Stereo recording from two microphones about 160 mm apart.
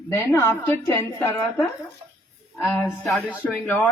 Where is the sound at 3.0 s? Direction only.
Centre (ahead or behind).